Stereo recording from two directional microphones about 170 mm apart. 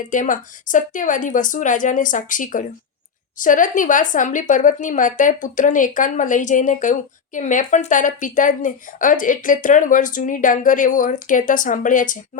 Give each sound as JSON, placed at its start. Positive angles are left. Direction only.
{"t": 0.1, "sound": "speech", "side_deg": 50}